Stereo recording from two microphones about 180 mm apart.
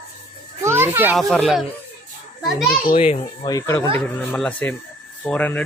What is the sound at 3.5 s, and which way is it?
Speech, 15° left (ahead or behind).